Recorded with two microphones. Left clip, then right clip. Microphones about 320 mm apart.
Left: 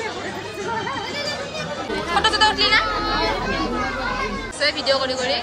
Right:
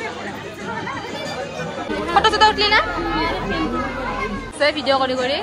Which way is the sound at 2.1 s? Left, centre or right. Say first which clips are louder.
Right 3 dB; centre.